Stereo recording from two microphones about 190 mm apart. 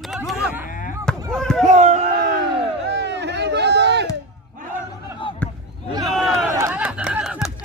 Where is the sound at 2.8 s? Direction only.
65° right (ahead or behind).